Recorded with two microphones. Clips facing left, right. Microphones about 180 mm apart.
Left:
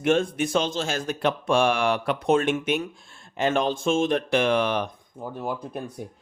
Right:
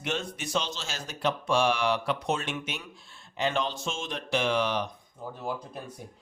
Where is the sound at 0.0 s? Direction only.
50° left (ahead or behind).